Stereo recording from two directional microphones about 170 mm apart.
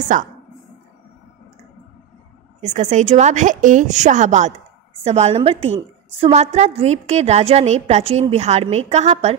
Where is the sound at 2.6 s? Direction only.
45° right (ahead or behind).